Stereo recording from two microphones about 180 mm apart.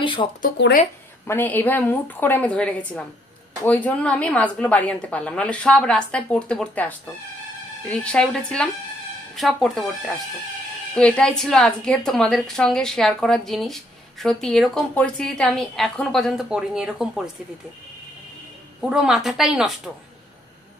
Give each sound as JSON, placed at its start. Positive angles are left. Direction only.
{"t": 0.0, "sound": "speech", "side_deg": 25}
{"t": 0.6, "sound": "speech", "side_deg": 75}
{"t": 1.2, "sound": "a woman's voice", "side_deg": 10}
{"t": 18.8, "sound": "a woman's voice", "side_deg": -5}